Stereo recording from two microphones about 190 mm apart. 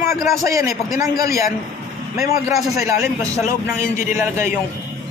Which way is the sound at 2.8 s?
15° right (ahead or behind).